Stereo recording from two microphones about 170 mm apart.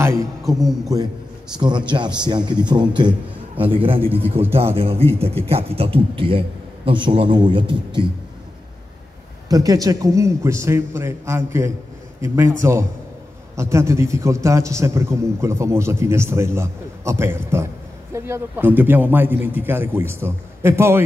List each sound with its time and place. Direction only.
0.0 s a man's voice: 15° right (ahead or behind)
0.4 s a man's voice: centre (ahead or behind)
1.6 s a man's voice: 25° right (ahead or behind)
4.3 s a man's voice: 15° right (ahead or behind)
4.7 s a man's voice: 35° right (ahead or behind)
9.5 s a man's voice: 20° right (ahead or behind)